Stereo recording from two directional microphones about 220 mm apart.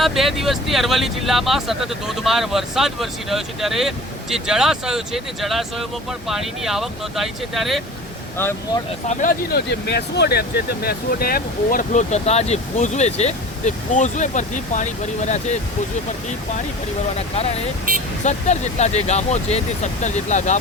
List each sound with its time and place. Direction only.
0.0 s speech: centre (ahead or behind)
8.4 s speech: 10° left (ahead or behind)
9.0 s speech: 40° left (ahead or behind)
17.2 s speech: 30° left (ahead or behind)